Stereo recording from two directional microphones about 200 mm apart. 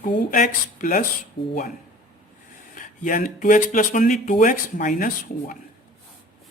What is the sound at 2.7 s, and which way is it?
Speech, 40° left (ahead or behind).